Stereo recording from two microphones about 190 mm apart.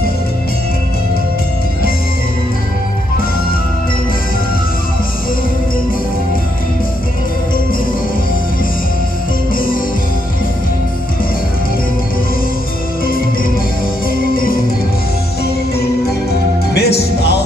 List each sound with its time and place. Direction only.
16.7 s music: 60° left (ahead or behind)